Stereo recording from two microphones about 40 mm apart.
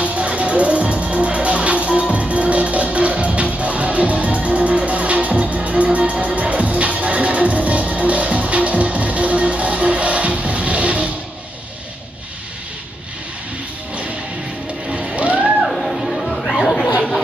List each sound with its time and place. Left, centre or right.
0.0 s music: right
14.9 s cat: right
15.6 s chatter: centre